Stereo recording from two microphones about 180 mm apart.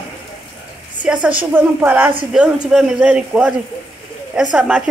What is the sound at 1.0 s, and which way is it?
A man's voice, 5° right (ahead or behind).